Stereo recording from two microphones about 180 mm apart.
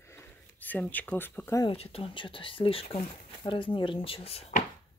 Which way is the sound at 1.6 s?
30° left (ahead or behind).